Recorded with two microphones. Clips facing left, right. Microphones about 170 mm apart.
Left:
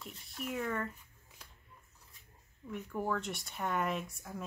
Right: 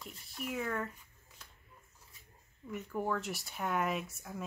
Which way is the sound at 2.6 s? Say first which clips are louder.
Even; 5° right (ahead or behind).